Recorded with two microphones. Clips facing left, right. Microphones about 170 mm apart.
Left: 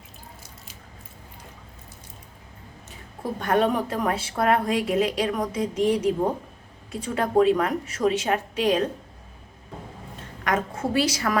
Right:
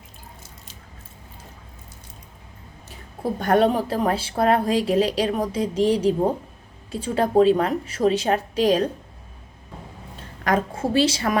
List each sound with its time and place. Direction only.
3.3 s a woman's voice: 35° right (ahead or behind)
10.4 s a woman's voice: 30° right (ahead or behind)